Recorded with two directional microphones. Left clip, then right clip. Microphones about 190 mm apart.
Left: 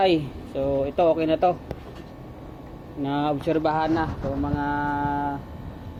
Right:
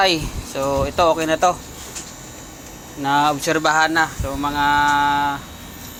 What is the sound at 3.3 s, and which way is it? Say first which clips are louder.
Speech: right 5 dB; 25° right (ahead or behind).